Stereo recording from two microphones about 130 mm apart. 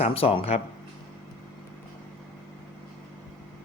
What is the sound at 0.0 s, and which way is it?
Speech, 50° left (ahead or behind).